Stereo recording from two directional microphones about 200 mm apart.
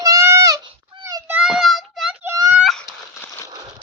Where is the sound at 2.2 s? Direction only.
15° right (ahead or behind).